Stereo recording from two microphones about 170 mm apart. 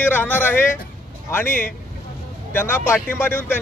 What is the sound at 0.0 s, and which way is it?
Speech, 10° left (ahead or behind).